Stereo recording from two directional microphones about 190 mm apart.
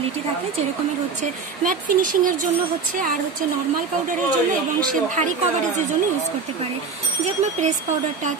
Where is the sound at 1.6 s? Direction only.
45° right (ahead or behind).